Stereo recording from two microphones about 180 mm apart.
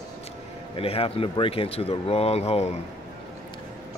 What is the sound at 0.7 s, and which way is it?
A man's voice, 30° left (ahead or behind).